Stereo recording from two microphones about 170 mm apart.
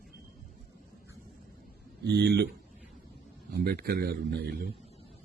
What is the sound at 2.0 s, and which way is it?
Speech, 90° right.